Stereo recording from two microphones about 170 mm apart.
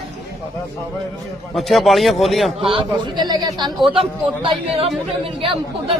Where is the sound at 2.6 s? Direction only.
30° right (ahead or behind).